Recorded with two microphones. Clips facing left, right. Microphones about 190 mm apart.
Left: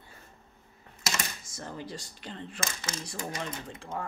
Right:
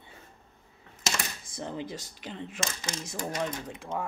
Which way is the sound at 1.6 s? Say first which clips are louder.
Right 4 dB; 20° right (ahead or behind).